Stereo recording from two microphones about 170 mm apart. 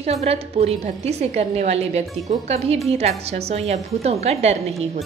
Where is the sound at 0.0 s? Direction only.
40° right (ahead or behind).